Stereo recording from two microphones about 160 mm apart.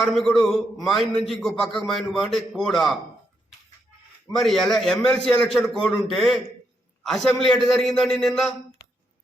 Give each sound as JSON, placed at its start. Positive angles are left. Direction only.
{"t": 0.0, "sound": "a man's voice", "side_deg": 0}
{"t": 4.3, "sound": "a man's voice", "side_deg": 0}